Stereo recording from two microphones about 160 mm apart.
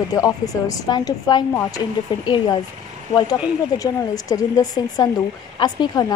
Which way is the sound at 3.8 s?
20° left (ahead or behind).